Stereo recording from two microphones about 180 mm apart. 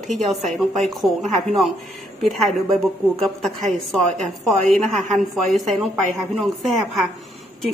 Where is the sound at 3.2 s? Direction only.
Centre (ahead or behind).